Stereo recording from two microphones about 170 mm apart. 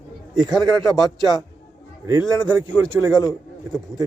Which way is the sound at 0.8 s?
Centre (ahead or behind).